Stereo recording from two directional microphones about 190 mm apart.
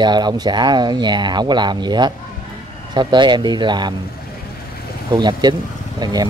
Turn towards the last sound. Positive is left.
turn(degrees=-20)  # may be behind; listen again after turning